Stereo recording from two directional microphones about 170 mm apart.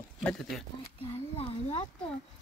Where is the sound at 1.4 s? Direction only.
35° left (ahead or behind).